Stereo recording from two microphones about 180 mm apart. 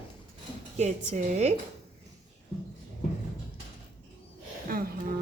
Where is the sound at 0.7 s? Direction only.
40° right (ahead or behind).